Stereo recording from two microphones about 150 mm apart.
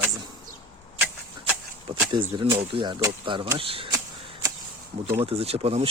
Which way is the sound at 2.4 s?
35° right (ahead or behind).